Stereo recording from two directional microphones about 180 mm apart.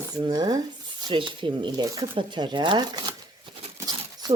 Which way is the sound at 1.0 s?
25° right (ahead or behind).